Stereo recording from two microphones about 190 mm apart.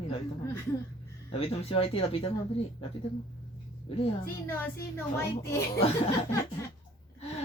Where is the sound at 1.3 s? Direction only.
30° left (ahead or behind).